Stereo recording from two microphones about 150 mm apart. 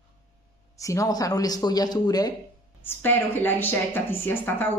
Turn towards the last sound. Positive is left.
turn(degrees=15)  # may be behind; listen again after turning